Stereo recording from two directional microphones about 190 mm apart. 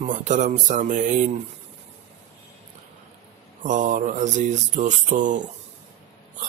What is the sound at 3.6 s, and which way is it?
Speech, 40° right (ahead or behind).